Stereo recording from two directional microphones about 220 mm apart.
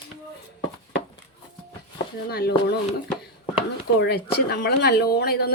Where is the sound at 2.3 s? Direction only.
45° left (ahead or behind).